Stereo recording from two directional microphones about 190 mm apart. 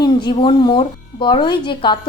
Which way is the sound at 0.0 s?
25° left (ahead or behind).